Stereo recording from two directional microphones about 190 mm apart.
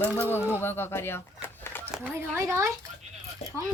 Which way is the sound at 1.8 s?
10° right (ahead or behind).